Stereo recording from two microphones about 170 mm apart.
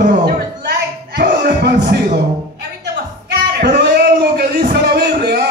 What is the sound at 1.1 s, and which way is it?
Music, 75° right (ahead or behind).